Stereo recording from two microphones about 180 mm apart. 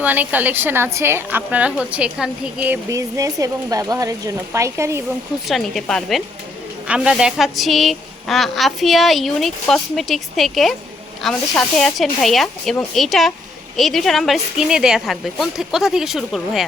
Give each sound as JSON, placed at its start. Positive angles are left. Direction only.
{"t": 0.0, "sound": "a woman's voice", "side_deg": -10}
{"t": 5.5, "sound": "a woman's voice", "side_deg": 0}